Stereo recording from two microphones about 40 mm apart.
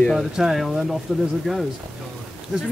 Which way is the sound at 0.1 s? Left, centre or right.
Centre.